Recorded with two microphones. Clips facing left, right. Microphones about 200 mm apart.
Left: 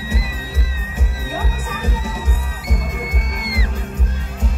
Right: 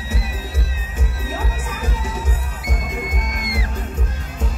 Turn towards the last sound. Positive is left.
turn(degrees=-50)  # may be behind; listen again after turning